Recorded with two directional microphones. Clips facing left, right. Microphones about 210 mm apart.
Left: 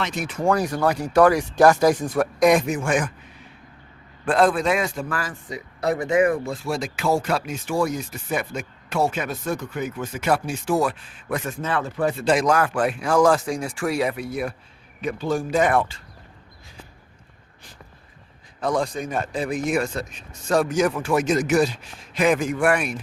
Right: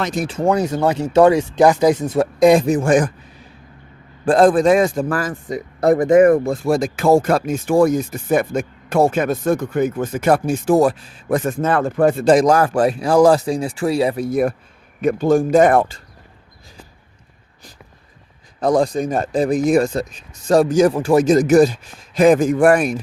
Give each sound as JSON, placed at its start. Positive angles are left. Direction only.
{"t": 0.0, "sound": "speech", "side_deg": -40}
{"t": 0.3, "sound": "speech", "side_deg": -20}
{"t": 4.3, "sound": "a man's voice", "side_deg": -45}
{"t": 14.3, "sound": "a man's voice", "side_deg": -45}
{"t": 18.6, "sound": "speech", "side_deg": -40}